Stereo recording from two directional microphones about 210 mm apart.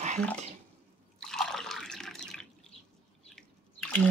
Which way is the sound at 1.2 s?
Centre (ahead or behind).